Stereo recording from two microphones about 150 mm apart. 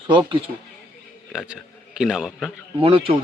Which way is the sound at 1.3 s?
5° right (ahead or behind).